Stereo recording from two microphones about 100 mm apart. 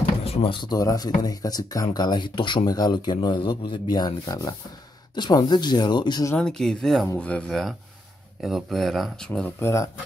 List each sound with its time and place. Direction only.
0.0 s drawer open or close: 85° left; by 0.7 s 65° left (ahead or behind)
0.7 s speech: 40° left (ahead or behind)
2.6 s speech: 40° left (ahead or behind)
5.1 s speech: 45° left (ahead or behind)
6.3 s speech: 5° left (ahead or behind)
9.6 s speech: 25° left (ahead or behind)